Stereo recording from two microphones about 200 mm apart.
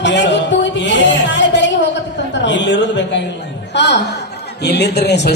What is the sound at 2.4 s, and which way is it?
Speech, 60° left (ahead or behind).